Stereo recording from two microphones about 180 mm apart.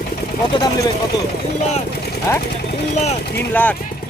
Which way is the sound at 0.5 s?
20° left (ahead or behind).